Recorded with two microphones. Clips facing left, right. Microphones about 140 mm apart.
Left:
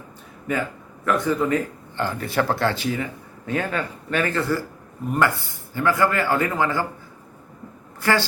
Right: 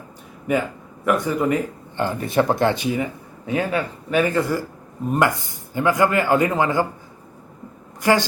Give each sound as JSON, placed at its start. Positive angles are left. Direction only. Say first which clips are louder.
{"t": 1.0, "sound": "speech", "louder": "right 2 dB", "side_deg": -15}
{"t": 8.0, "sound": "speech", "louder": "right 3 dB", "side_deg": -15}